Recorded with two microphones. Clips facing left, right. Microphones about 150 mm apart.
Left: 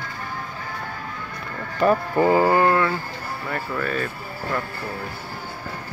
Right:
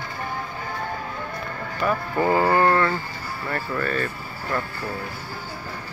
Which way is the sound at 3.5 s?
5° left (ahead or behind).